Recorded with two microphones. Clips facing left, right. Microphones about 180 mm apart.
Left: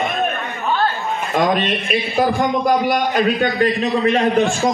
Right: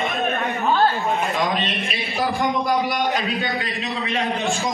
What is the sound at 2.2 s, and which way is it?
A man's voice, 50° left (ahead or behind).